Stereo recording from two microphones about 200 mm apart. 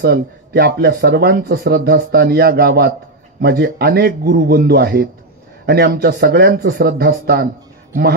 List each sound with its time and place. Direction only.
0.0 s speech: 50° right (ahead or behind)